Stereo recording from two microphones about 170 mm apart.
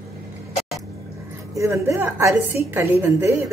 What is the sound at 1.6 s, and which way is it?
A woman's voice, 15° right (ahead or behind).